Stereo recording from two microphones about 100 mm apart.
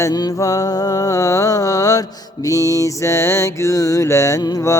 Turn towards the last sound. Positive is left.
turn(degrees=35)  # may be behind; listen again after turning